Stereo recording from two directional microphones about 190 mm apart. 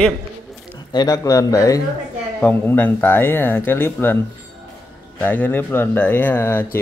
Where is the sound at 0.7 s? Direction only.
20° left (ahead or behind).